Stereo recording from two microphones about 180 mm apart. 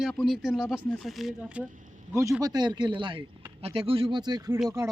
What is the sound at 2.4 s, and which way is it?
Speech, 20° right (ahead or behind).